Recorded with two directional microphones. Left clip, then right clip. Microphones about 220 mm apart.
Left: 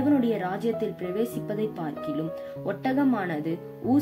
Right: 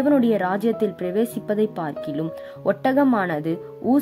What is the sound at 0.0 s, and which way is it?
Speech, 50° right (ahead or behind).